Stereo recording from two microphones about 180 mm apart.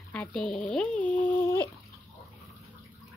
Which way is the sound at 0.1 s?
5° left (ahead or behind).